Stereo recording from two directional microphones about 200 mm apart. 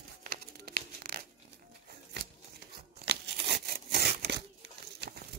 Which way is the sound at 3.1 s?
55° right (ahead or behind).